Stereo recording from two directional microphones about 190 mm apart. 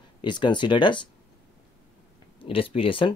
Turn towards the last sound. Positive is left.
turn(degrees=25)  # may be behind; listen again after turning